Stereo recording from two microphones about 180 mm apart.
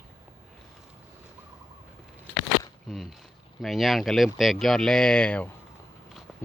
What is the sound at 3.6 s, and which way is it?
Speech, centre (ahead or behind).